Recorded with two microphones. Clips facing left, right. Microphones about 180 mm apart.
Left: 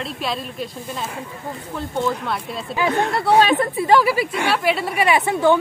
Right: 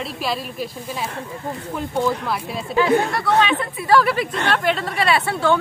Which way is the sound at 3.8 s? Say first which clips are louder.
Even; 20° left (ahead or behind).